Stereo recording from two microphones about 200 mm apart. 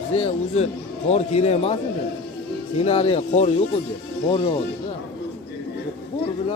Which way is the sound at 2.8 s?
30° left (ahead or behind).